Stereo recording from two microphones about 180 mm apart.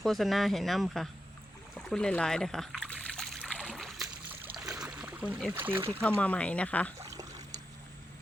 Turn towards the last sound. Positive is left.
turn(degrees=-20)  # may be behind; listen again after turning